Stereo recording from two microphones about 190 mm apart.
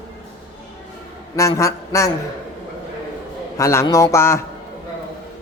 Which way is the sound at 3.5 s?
15° left (ahead or behind).